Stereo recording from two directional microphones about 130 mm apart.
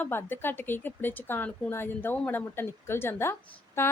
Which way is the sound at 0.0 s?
15° left (ahead or behind).